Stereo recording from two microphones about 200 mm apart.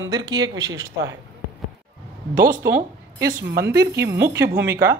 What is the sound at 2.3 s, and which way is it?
Speech, 45° right (ahead or behind).